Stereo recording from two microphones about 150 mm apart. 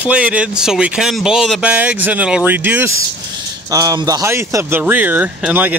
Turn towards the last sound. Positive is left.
turn(degrees=-10)  # may be behind; listen again after turning